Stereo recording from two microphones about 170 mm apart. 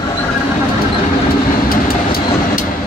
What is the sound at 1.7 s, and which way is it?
Vehicle, 60° left (ahead or behind).